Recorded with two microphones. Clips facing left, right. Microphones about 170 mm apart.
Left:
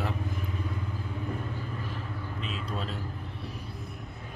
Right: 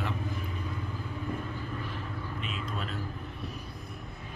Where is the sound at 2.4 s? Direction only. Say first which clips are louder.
Left 4 dB; 30° left (ahead or behind).